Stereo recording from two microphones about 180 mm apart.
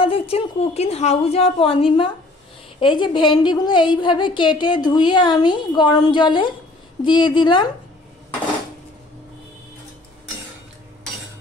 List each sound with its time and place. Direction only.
0.0 s a woman's voice: 30° left (ahead or behind)